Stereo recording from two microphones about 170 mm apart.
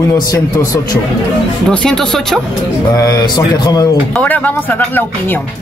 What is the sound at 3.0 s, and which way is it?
Speech, 20° left (ahead or behind).